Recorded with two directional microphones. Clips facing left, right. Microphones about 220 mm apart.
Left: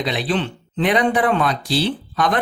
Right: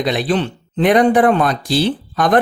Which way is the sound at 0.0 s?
45° right (ahead or behind).